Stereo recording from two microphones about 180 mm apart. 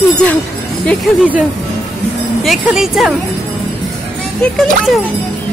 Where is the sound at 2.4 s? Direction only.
Centre (ahead or behind).